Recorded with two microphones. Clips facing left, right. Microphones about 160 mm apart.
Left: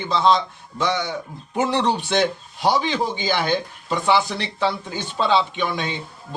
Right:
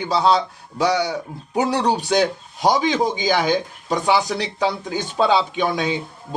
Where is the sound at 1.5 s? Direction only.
15° right (ahead or behind).